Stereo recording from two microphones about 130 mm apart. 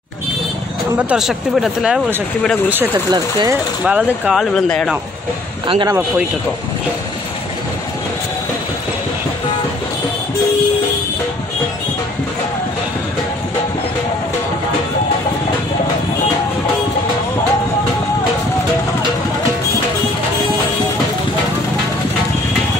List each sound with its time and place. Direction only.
0.9 s speech: 5° right (ahead or behind)
2.7 s speech: 15° right (ahead or behind)
3.1 s speech: 30° right (ahead or behind)
3.8 s speech: 5° right (ahead or behind)